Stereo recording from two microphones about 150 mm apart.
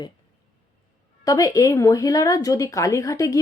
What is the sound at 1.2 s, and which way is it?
Speech, 20° left (ahead or behind).